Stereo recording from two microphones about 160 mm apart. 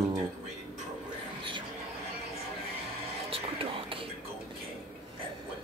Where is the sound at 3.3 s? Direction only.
35° right (ahead or behind).